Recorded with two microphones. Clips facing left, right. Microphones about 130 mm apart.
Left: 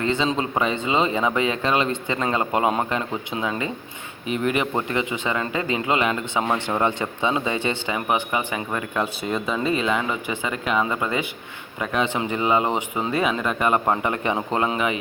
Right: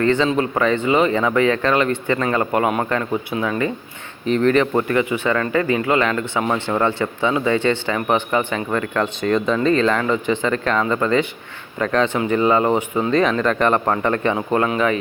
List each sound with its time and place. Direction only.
0.0 s speech: 15° left (ahead or behind)
4.3 s speech: 10° left (ahead or behind)